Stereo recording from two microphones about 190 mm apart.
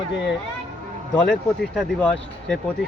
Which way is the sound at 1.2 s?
5° left (ahead or behind).